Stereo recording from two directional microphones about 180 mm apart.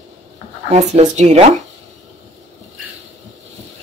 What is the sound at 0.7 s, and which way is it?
Speech, 40° right (ahead or behind).